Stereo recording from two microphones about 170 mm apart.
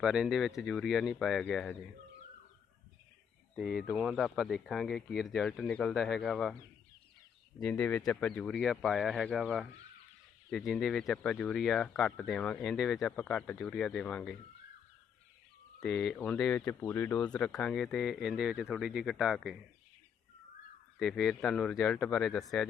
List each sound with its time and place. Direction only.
0.0 s speech: 5° right (ahead or behind)
3.6 s speech: 5° right (ahead or behind)
7.6 s speech: 5° left (ahead or behind)
15.8 s speech: centre (ahead or behind)
21.0 s speech: centre (ahead or behind)